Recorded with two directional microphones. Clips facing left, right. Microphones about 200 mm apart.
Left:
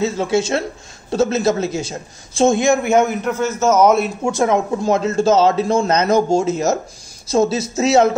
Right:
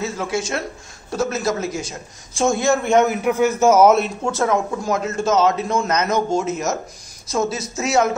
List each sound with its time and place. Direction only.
0.0 s a man's voice: 25° left (ahead or behind); by 4.3 s centre (ahead or behind)
4.3 s speech: 20° left (ahead or behind)